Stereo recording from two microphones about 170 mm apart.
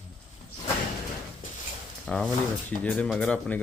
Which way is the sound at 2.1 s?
5° left (ahead or behind).